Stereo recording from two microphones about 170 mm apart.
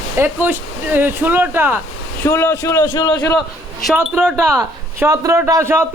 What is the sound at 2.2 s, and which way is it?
Speech, 15° left (ahead or behind).